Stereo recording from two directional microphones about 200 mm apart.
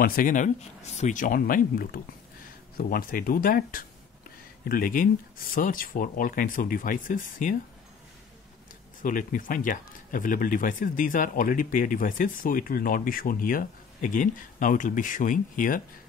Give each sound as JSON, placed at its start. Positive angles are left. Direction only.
{"t": 0.0, "sound": "speech", "side_deg": 45}
{"t": 9.0, "sound": "speech", "side_deg": 40}